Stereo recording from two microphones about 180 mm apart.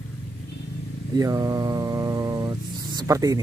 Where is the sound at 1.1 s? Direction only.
20° right (ahead or behind).